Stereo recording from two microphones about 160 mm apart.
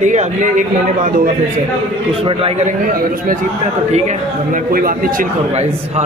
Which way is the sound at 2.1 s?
35° right (ahead or behind).